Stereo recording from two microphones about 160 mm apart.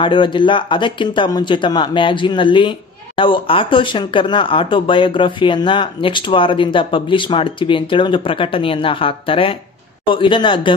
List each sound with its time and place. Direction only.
0.0 s speech: 30° left (ahead or behind)